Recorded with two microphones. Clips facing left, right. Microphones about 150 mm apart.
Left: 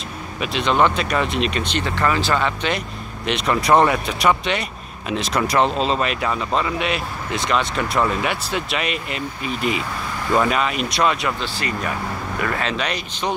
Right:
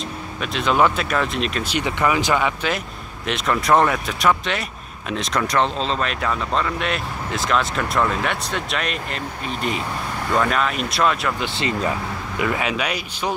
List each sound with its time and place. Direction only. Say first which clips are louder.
0.4 s speech: even; centre (ahead or behind)
11.3 s speech: right 2 dB; 20° right (ahead or behind)
12.4 s speech: right 2 dB; 10° right (ahead or behind)